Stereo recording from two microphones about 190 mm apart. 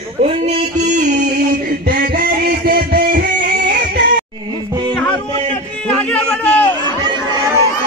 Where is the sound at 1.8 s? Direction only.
50° right (ahead or behind).